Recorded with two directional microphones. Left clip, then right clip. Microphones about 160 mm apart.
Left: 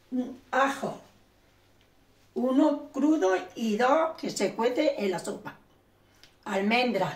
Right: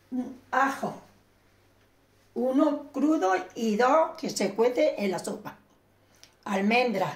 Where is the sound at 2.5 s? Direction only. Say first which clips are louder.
Left 2 dB; 40° right (ahead or behind); by 7.1 s 55° right (ahead or behind).